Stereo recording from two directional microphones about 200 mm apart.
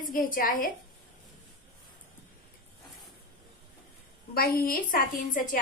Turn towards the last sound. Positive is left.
turn(degrees=40)  # may be behind; listen again after turning